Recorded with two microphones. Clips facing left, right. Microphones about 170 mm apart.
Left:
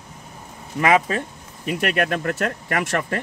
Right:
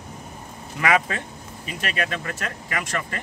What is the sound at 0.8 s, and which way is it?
Speech, 35° left (ahead or behind).